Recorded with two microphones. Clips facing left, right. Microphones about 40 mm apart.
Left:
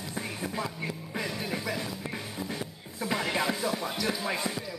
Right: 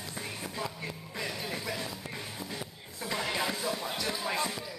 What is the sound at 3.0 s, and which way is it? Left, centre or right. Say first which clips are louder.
Music: left 3 dB; centre.